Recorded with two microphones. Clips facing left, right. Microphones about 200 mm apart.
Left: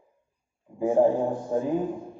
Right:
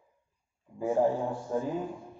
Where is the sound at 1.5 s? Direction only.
25° left (ahead or behind).